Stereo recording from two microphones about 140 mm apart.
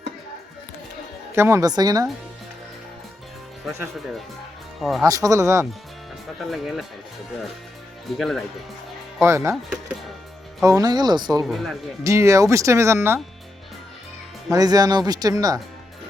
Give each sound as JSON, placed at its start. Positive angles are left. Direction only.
{"t": 1.4, "sound": "speech", "side_deg": -20}
{"t": 4.8, "sound": "speech", "side_deg": 0}
{"t": 5.0, "sound": "speech", "side_deg": -25}
{"t": 6.4, "sound": "speech", "side_deg": 0}
{"t": 8.2, "sound": "speech", "side_deg": 0}
{"t": 9.2, "sound": "speech", "side_deg": -20}
{"t": 10.6, "sound": "speech", "side_deg": -25}
{"t": 11.4, "sound": "speech", "side_deg": 0}
{"t": 12.0, "sound": "speech", "side_deg": -20}
{"t": 14.5, "sound": "speech", "side_deg": -25}